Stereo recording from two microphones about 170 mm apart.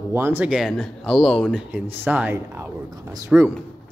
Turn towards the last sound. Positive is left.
turn(degrees=-15)  # may be behind; listen again after turning